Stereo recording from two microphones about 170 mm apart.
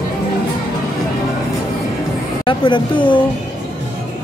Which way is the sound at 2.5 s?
30° left (ahead or behind).